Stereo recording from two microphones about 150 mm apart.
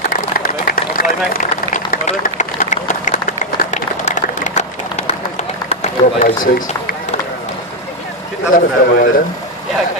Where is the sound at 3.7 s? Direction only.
50° left (ahead or behind).